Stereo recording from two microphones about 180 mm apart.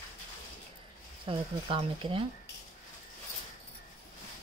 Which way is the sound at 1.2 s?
30° right (ahead or behind).